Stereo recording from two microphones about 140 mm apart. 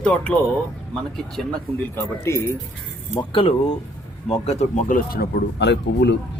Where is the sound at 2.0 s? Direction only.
20° left (ahead or behind).